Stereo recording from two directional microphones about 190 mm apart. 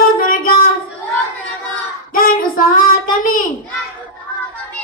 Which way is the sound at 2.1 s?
50° left (ahead or behind).